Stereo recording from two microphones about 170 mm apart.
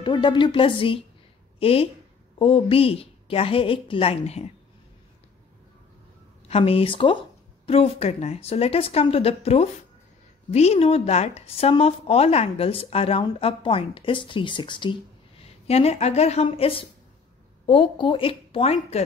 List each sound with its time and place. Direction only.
0.0 s a woman's voice: 25° left (ahead or behind)
6.5 s speech: 35° left (ahead or behind)